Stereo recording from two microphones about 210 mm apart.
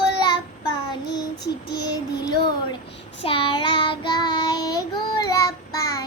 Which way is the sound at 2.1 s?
20° left (ahead or behind).